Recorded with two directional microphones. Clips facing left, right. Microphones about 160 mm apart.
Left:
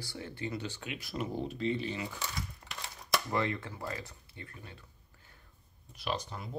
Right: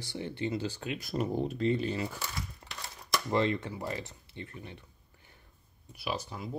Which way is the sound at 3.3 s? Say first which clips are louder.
Right 4 dB; 20° right (ahead or behind).